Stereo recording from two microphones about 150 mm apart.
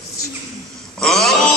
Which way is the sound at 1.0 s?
5° left (ahead or behind).